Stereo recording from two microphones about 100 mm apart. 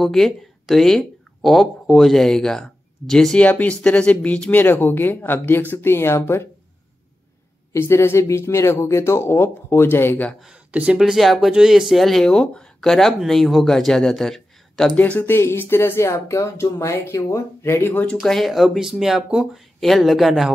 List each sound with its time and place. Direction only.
0.0 s speech: centre (ahead or behind)
3.4 s speech: 15° left (ahead or behind)
7.7 s speech: 25° left (ahead or behind)
10.4 s speech: 10° right (ahead or behind)
15.0 s speech: 20° left (ahead or behind)
18.2 s speech: centre (ahead or behind)